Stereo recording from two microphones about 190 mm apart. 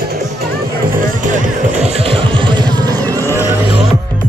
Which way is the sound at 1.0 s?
40° right (ahead or behind).